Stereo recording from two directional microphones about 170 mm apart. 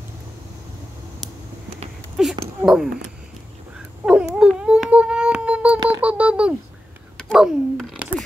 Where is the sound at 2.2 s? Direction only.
5° right (ahead or behind).